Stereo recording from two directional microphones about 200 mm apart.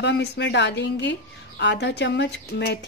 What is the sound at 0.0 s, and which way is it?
A woman's voice, 60° left (ahead or behind).